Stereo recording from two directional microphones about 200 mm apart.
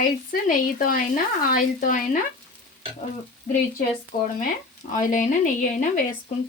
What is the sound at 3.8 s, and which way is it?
A woman's voice, 45° left (ahead or behind).